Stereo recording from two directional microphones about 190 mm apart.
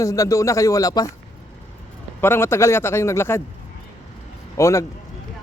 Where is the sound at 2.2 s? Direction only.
10° left (ahead or behind).